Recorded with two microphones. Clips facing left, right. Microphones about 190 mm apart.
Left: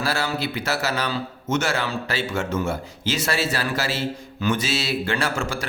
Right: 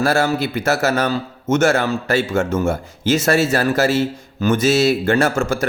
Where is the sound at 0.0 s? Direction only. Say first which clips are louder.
Right 8 dB; 45° right (ahead or behind).